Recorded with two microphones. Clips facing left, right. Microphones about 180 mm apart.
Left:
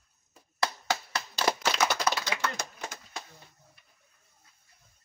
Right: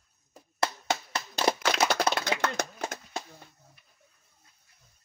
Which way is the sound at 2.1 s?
55° right (ahead or behind).